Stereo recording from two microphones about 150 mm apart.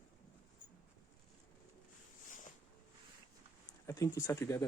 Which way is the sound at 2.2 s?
60° left (ahead or behind).